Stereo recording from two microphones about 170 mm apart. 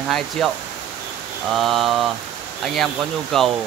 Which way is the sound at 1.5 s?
Centre (ahead or behind).